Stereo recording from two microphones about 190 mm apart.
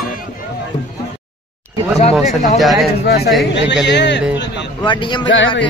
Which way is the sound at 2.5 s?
Centre (ahead or behind).